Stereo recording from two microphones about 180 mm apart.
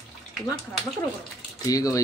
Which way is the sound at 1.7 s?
20° left (ahead or behind).